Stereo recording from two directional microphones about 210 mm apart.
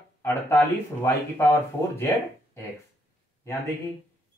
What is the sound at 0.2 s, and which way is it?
Speech, 10° left (ahead or behind).